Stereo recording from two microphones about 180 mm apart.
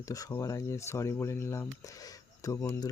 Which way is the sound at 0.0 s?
20° left (ahead or behind).